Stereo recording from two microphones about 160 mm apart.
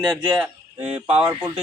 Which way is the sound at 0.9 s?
35° right (ahead or behind).